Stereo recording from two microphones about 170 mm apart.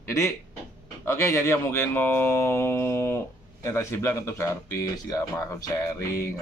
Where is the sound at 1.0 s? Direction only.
15° left (ahead or behind).